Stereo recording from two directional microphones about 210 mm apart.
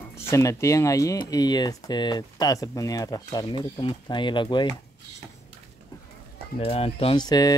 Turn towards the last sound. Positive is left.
turn(degrees=20)  # may be behind; listen again after turning